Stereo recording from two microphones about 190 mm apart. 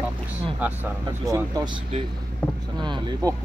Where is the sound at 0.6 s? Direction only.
10° right (ahead or behind).